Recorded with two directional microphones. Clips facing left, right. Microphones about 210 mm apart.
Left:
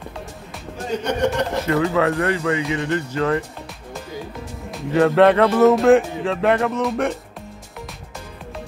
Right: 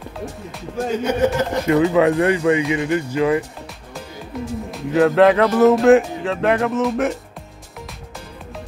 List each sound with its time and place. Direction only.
1.0 s speech: 5° right (ahead or behind)
1.7 s speech: 15° right (ahead or behind)
4.6 s speech: centre (ahead or behind)